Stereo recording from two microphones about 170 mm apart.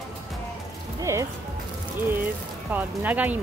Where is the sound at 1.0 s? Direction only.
20° right (ahead or behind).